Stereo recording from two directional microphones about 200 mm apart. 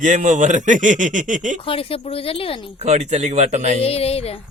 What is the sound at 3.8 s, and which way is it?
Speech, 30° left (ahead or behind).